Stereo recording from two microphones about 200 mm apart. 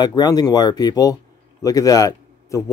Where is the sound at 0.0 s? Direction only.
20° left (ahead or behind).